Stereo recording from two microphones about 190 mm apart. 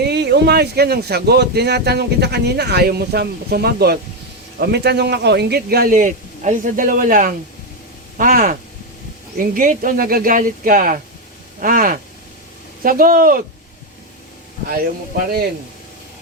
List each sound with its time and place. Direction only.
0.0 s speech: 60° right (ahead or behind)